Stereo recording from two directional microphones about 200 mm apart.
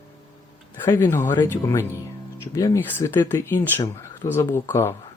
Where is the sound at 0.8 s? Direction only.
15° left (ahead or behind).